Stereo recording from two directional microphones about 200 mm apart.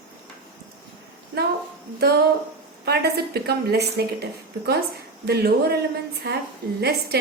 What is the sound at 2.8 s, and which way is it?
A woman's voice, 55° right (ahead or behind).